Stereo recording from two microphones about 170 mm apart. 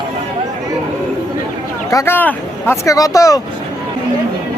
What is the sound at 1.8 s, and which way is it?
Speech, 15° left (ahead or behind).